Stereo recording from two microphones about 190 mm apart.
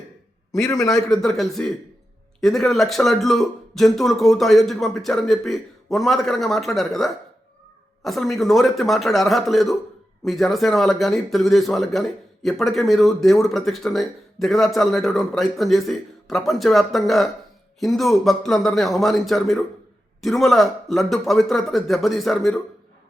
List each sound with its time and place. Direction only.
0.6 s a man's voice: 15° left (ahead or behind)
0.9 s speech: centre (ahead or behind)